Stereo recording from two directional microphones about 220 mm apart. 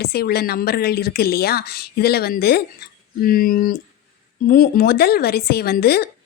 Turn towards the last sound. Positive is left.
turn(degrees=45)  # may be behind; listen again after turning